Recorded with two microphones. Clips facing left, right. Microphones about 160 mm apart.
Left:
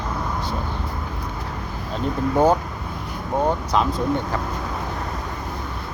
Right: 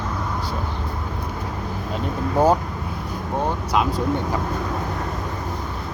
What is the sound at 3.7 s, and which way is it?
Speech, 5° right (ahead or behind).